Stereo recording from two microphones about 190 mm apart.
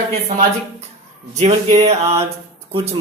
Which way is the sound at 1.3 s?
35° right (ahead or behind).